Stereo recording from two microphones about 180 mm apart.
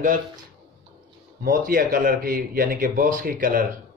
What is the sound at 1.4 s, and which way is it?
A man's voice, 50° right (ahead or behind).